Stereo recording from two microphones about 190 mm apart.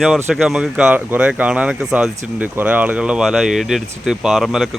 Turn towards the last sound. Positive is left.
turn(degrees=0)  # may be behind; listen again after turning